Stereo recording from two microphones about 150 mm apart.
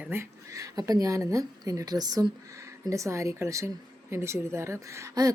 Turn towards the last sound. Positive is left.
turn(degrees=-20)  # may be behind; listen again after turning